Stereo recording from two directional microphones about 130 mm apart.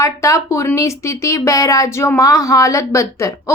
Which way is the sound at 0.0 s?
25° left (ahead or behind).